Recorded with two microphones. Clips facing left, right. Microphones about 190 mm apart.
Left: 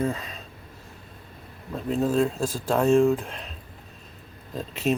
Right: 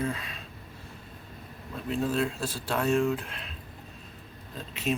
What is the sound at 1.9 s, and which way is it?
Speech, 40° left (ahead or behind).